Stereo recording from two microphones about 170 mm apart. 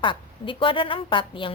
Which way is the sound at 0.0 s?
30° left (ahead or behind).